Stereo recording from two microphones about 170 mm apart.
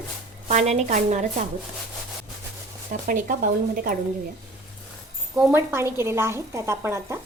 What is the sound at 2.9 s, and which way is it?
Speech, 55° right (ahead or behind).